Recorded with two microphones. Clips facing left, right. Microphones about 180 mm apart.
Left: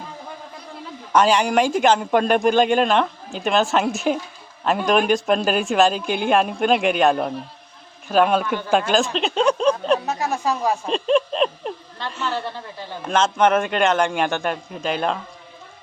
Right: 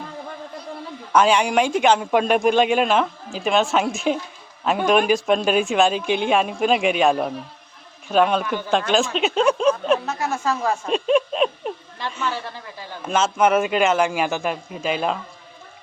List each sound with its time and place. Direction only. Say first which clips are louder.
1.1 s speech: even; centre (ahead or behind)
10.1 s speech: left 1 dB; 15° left (ahead or behind)
10.8 s speech: right 1 dB; 5° right (ahead or behind)